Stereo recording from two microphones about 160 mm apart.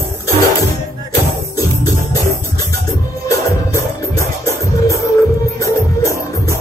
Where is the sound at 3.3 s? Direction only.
20° left (ahead or behind).